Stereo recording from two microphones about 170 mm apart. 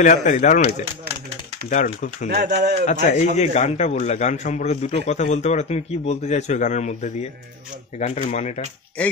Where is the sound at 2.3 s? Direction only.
75° right (ahead or behind).